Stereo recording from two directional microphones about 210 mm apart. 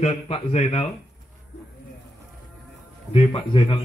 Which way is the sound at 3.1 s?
25° left (ahead or behind).